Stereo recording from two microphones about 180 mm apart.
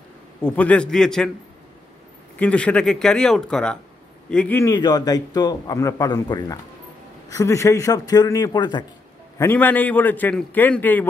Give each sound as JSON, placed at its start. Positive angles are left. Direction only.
{"t": 0.4, "sound": "speech", "side_deg": 10}
{"t": 2.3, "sound": "a man's voice", "side_deg": 5}
{"t": 9.4, "sound": "a man's voice", "side_deg": 10}